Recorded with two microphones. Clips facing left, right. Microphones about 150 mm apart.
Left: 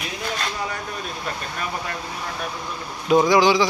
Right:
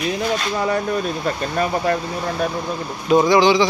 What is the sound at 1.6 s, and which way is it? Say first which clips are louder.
Speech: right 11 dB; 40° right (ahead or behind).